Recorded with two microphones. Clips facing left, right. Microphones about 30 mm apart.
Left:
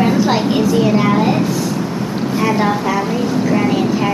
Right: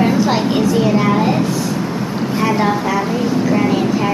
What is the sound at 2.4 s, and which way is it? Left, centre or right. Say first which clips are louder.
Vehicle: even; centre.